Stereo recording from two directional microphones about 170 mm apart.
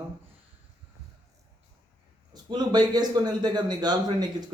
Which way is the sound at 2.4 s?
25° right (ahead or behind).